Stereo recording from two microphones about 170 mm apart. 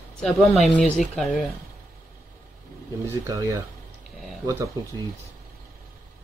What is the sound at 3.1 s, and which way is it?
Speech, 20° right (ahead or behind).